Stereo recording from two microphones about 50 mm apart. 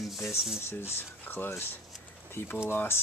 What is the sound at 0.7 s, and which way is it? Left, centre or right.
Speech, left.